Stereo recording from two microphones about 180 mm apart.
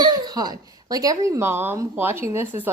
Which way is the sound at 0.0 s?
25° right (ahead or behind).